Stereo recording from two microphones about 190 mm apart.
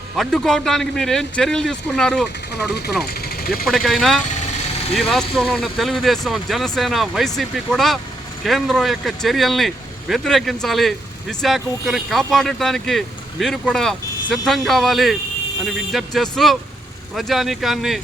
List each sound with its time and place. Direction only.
0.2 s speech: centre (ahead or behind)
2.5 s speech: 60° left (ahead or behind)
3.1 s vehicle: 55° left (ahead or behind)
3.7 s speech: centre (ahead or behind)